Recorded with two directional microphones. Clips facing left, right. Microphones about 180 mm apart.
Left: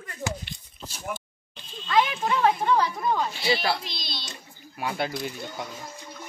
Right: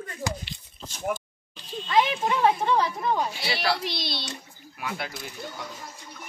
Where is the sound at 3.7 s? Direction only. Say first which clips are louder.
Right 2 dB; 70° right (ahead or behind).